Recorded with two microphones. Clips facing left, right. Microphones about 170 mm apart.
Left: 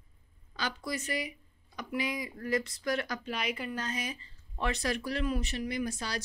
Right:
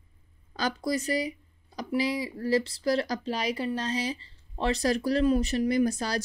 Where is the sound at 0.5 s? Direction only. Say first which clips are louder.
Right 7 dB; 40° right (ahead or behind).